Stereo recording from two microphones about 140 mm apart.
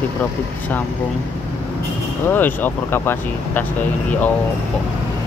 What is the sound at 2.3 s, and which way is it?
Speech, 15° left (ahead or behind).